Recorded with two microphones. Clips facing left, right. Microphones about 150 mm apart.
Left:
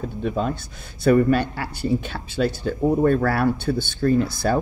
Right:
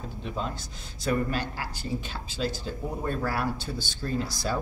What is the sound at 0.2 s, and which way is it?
Speech, 55° left (ahead or behind).